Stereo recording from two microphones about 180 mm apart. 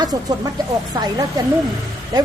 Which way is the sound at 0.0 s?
20° right (ahead or behind).